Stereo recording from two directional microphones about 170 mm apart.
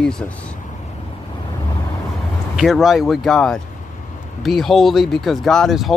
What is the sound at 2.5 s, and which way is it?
Speech, centre (ahead or behind).